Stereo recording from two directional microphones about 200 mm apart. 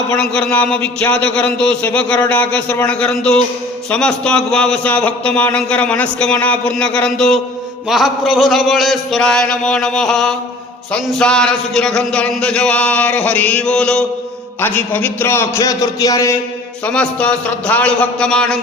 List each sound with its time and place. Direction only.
0.2 s a man's voice: 5° left (ahead or behind)
16.8 s a man's voice: 5° left (ahead or behind)